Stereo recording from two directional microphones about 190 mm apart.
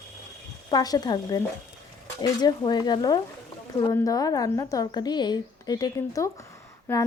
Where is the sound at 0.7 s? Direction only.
20° left (ahead or behind).